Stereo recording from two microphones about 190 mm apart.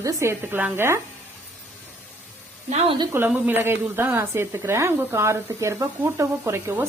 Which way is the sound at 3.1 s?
10° right (ahead or behind).